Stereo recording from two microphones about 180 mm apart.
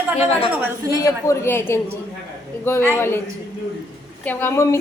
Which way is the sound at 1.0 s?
15° left (ahead or behind).